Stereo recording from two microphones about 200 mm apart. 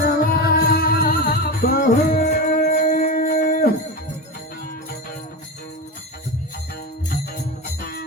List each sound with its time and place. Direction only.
0.0 s music: 50° left (ahead or behind)